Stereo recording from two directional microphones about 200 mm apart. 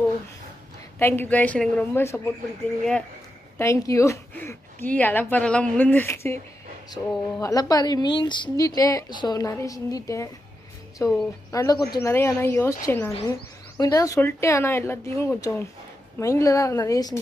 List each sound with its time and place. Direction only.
0.9 s a woman's voice: 10° left (ahead or behind)
3.5 s a woman's voice: 15° left (ahead or behind)